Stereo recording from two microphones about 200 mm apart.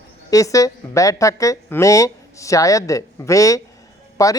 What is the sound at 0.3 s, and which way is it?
Speech, 15° left (ahead or behind).